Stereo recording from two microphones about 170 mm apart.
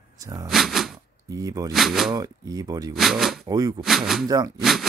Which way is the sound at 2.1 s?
20° right (ahead or behind).